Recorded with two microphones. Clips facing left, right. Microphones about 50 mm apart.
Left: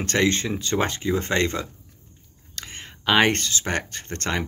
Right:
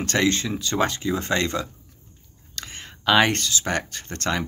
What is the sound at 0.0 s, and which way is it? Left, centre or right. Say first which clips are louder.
Speech: even; left.